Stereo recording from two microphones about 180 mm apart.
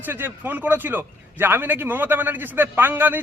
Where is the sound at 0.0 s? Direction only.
10° right (ahead or behind).